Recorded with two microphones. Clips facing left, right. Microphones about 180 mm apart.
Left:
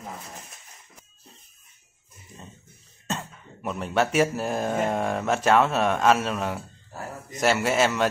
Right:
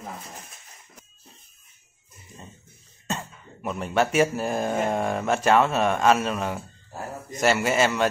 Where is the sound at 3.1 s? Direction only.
Centre (ahead or behind).